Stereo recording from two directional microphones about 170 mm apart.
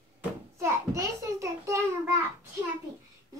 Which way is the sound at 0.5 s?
15° right (ahead or behind).